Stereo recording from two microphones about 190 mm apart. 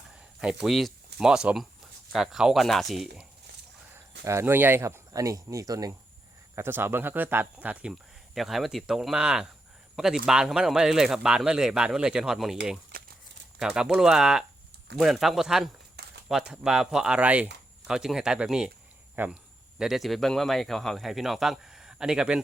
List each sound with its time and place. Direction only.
0.6 s speech: centre (ahead or behind)
4.2 s speech: 15° right (ahead or behind)
12.9 s a sound: 50° right (ahead or behind)
13.6 s speech: 5° right (ahead or behind)
16.0 s walk: 55° right (ahead or behind)
16.3 s speech: 5° right (ahead or behind)